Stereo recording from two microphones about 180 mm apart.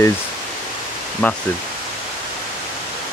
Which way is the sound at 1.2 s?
10° left (ahead or behind).